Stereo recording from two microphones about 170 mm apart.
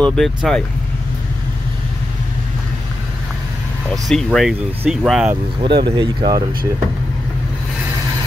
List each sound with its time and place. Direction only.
0.0 s speech: centre (ahead or behind)
3.9 s speech: centre (ahead or behind)
5.6 s speech: 30° right (ahead or behind)